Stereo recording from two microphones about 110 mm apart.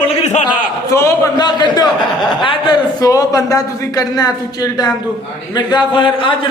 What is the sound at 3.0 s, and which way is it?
A man's voice, 35° left (ahead or behind).